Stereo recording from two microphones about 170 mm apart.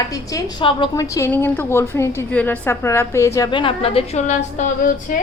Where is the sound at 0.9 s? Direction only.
20° left (ahead or behind).